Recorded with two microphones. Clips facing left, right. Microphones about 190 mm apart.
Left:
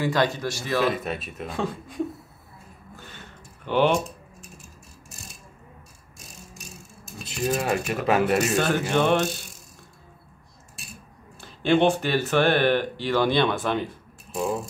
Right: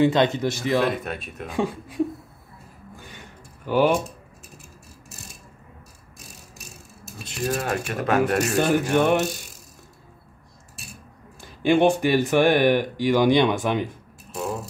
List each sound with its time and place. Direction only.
0.0 s speech: 20° right (ahead or behind)
0.8 s speech: centre (ahead or behind)
1.5 s speech: 10° right (ahead or behind)
3.0 s a sound: 10° right (ahead or behind)
7.2 s speech: 5° left (ahead or behind)
8.5 s speech: 10° right (ahead or behind)
11.4 s speech: 10° right (ahead or behind)